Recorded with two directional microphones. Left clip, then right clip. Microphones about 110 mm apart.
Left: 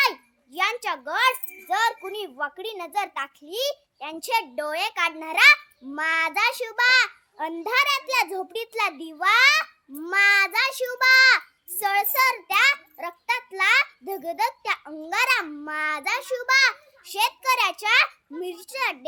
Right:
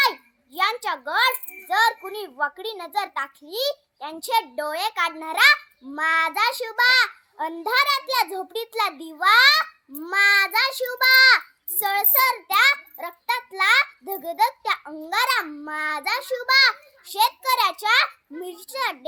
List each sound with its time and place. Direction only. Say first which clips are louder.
0.0 s a child's voice: right 1 dB; 35° left (ahead or behind)